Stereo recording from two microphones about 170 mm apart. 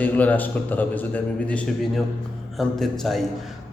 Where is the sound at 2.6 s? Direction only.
Centre (ahead or behind).